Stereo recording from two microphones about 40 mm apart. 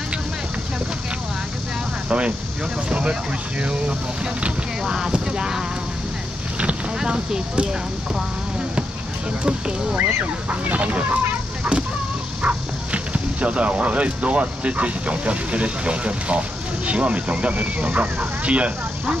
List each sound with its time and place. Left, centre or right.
2.0 s speech: right
7.0 s speech: centre
9.4 s speech: right
10.0 s speech: right
12.4 s speech: right